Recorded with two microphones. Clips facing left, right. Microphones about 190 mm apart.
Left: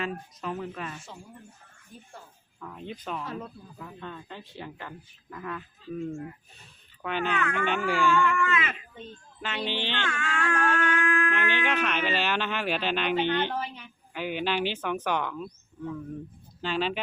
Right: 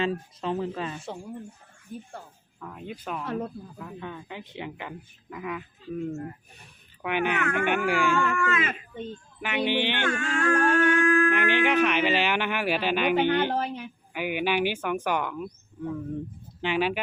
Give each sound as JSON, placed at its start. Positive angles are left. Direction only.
{"t": 0.0, "sound": "speech", "side_deg": -30}
{"t": 2.6, "sound": "speech", "side_deg": -5}
{"t": 8.1, "sound": "a woman's voice", "side_deg": -45}
{"t": 9.4, "sound": "speech", "side_deg": -15}
{"t": 10.2, "sound": "a sound", "side_deg": -35}
{"t": 11.3, "sound": "speech", "side_deg": -15}
{"t": 13.1, "sound": "a woman's voice", "side_deg": -50}
{"t": 14.1, "sound": "speech", "side_deg": -10}